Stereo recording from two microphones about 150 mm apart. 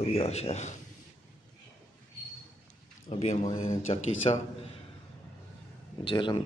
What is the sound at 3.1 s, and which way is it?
Speech, 45° left (ahead or behind).